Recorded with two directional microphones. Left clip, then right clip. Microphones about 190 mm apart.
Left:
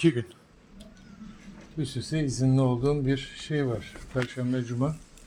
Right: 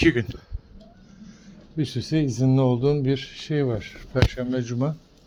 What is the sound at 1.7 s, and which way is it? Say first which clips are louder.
Speech: right 6 dB; 45° right (ahead or behind).